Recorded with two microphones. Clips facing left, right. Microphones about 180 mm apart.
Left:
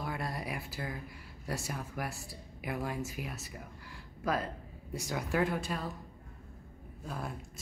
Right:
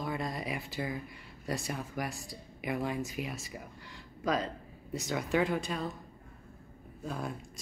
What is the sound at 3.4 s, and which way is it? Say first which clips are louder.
Speech: right 2 dB; 85° right.